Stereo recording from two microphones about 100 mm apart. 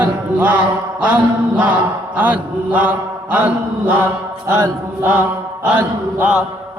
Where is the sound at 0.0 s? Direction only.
15° right (ahead or behind).